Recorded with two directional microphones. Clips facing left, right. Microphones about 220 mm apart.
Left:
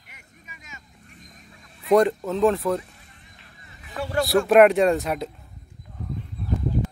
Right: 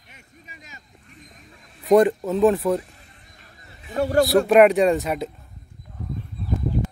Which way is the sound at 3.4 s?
40° right (ahead or behind).